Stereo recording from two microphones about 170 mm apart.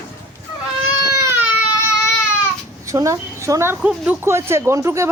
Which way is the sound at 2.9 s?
20° right (ahead or behind).